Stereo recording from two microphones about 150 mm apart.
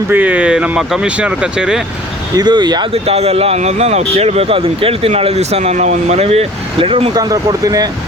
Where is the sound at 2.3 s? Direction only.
30° right (ahead or behind).